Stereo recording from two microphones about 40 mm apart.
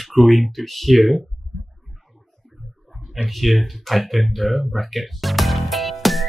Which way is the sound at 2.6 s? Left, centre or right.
Centre.